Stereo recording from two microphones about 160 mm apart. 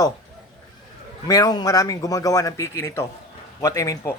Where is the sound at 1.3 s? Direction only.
25° left (ahead or behind).